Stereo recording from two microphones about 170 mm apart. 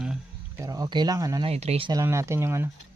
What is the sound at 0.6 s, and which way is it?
Speech, 20° right (ahead or behind).